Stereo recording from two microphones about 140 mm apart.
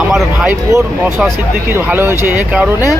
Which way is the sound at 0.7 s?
20° right (ahead or behind).